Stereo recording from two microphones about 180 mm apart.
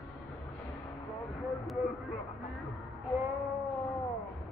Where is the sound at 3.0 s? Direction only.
Centre (ahead or behind).